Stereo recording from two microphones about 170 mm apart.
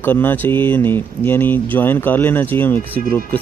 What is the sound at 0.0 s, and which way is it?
Speech, 10° left (ahead or behind).